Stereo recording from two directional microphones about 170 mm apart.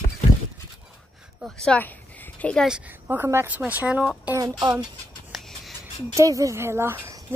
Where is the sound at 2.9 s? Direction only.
10° right (ahead or behind).